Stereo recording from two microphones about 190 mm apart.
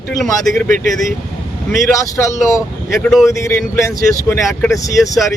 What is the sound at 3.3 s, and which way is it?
Speech, 15° left (ahead or behind).